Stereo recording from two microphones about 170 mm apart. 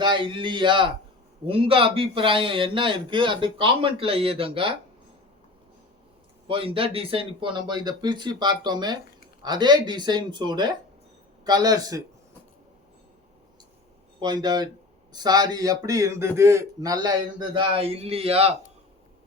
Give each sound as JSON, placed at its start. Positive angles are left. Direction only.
{"t": 0.0, "sound": "a man's voice", "side_deg": -30}
{"t": 6.5, "sound": "a man's voice", "side_deg": -30}
{"t": 14.2, "sound": "a man's voice", "side_deg": -25}